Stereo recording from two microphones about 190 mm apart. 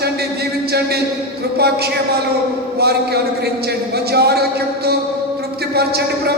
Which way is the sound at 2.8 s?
55° right (ahead or behind).